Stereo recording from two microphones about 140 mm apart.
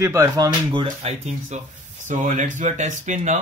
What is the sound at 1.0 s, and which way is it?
Speech, 45° right (ahead or behind).